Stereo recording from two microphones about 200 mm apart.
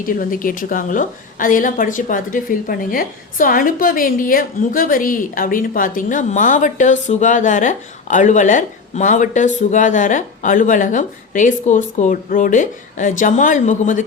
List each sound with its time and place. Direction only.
0.0 s a woman's voice: 45° left (ahead or behind)